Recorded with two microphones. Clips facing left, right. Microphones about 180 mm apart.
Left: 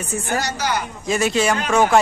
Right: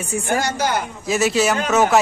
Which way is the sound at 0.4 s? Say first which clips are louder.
Right 2 dB; 50° right (ahead or behind).